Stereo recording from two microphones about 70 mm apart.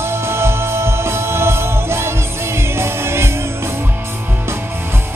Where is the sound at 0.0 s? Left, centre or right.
Right.